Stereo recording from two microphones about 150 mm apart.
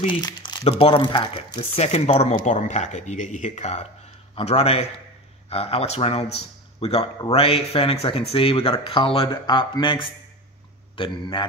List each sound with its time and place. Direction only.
0.0 s speech: 35° left (ahead or behind)